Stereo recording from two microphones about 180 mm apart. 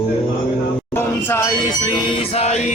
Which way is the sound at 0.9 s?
15° left (ahead or behind).